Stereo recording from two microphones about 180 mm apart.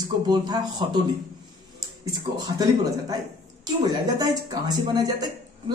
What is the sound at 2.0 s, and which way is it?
Speech, 20° right (ahead or behind).